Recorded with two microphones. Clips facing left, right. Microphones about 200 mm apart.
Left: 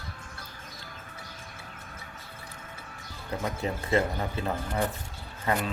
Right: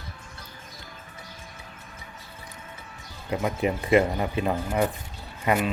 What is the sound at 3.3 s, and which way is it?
Speech, 15° right (ahead or behind).